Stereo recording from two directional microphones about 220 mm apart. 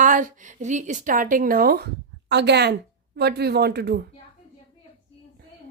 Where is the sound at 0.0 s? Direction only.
35° right (ahead or behind).